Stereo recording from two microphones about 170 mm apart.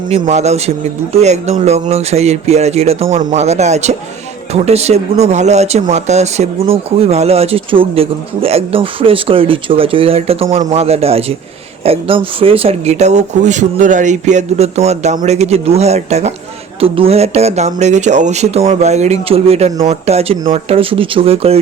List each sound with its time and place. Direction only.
0.1 s speech: 40° right (ahead or behind)